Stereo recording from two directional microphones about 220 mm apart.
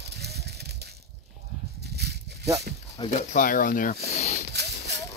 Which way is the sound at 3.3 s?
35° left (ahead or behind).